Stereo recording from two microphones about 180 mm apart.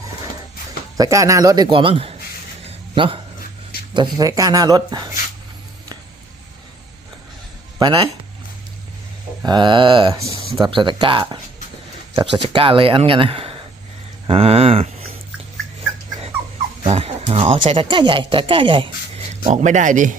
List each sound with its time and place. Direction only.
0.9 s speech: 20° right (ahead or behind)
2.6 s a sound: 30° right (ahead or behind)
3.9 s speech: 25° right (ahead or behind)
7.8 s speech: 30° right (ahead or behind)
9.4 s speech: 25° right (ahead or behind)
16.8 s speech: 35° right (ahead or behind)
19.5 s speech: 45° right (ahead or behind)